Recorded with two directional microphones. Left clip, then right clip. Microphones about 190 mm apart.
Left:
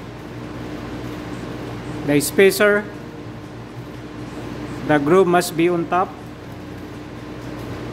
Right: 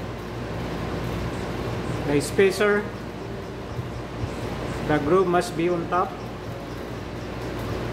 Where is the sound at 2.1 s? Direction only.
55° left (ahead or behind).